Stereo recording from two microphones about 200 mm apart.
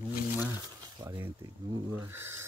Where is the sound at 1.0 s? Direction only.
15° right (ahead or behind).